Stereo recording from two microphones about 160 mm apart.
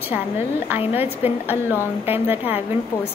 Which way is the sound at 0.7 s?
10° right (ahead or behind).